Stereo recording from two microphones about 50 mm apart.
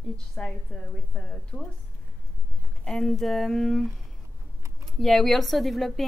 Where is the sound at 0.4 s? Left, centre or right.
Centre.